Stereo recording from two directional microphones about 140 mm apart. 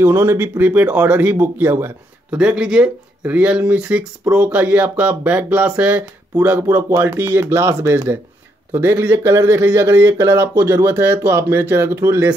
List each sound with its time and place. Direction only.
0.0 s speech: 20° right (ahead or behind)